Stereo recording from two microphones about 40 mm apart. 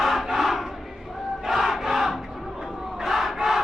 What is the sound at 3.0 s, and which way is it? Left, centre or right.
Crowd, centre.